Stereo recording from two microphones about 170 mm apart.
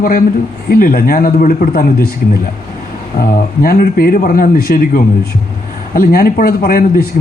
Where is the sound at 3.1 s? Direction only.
55° left (ahead or behind).